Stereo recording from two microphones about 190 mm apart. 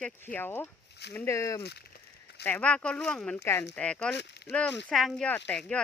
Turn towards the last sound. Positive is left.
turn(degrees=5)  # may be behind; listen again after turning